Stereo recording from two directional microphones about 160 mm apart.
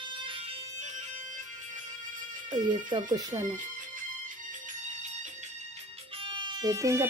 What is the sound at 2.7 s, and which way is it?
Speech, 30° right (ahead or behind).